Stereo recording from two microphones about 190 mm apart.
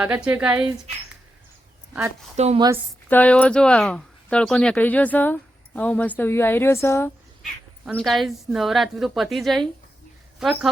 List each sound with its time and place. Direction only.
0.0 s a woman's voice: 5° right (ahead or behind)
2.3 s a woman's voice: 35° right (ahead or behind)
3.1 s speech: 10° left (ahead or behind)
7.9 s a woman's voice: centre (ahead or behind)